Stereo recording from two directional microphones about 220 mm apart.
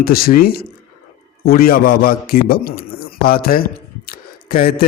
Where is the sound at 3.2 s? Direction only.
40° left (ahead or behind).